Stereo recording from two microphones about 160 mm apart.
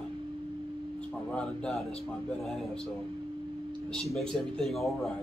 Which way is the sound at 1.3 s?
5° left (ahead or behind).